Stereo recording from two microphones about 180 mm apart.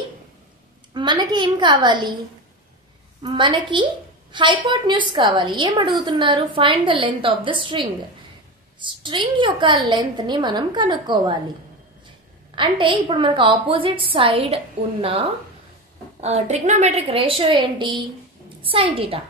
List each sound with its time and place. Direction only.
0.9 s a woman's voice: 25° right (ahead or behind)
3.2 s a woman's voice: 25° right (ahead or behind)
12.5 s a woman's voice: 25° right (ahead or behind)